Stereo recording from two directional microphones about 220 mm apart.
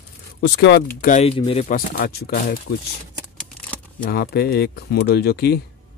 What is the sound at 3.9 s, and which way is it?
Speech, 45° left (ahead or behind).